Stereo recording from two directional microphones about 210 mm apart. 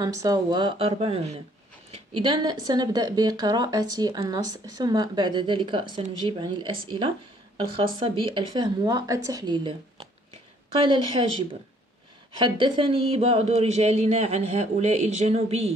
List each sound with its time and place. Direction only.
0.0 s a woman's voice: 15° right (ahead or behind)